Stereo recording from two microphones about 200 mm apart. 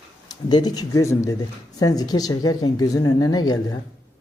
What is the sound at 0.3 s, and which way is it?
Speech, 20° left (ahead or behind).